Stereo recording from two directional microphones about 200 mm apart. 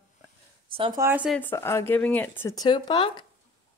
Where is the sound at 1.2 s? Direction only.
10° left (ahead or behind).